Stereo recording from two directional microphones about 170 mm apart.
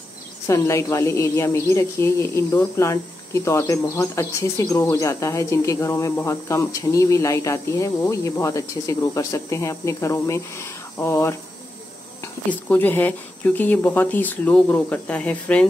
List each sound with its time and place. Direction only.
0.5 s speech: 15° left (ahead or behind)
12.4 s speech: 10° left (ahead or behind)